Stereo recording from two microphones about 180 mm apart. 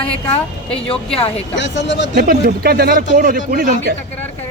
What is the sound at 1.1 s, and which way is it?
Speech, 35° left (ahead or behind).